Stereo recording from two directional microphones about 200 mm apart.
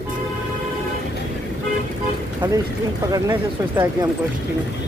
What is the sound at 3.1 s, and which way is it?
Speech, 15° right (ahead or behind).